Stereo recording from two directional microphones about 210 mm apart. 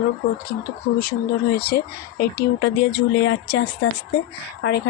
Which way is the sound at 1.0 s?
50° left (ahead or behind).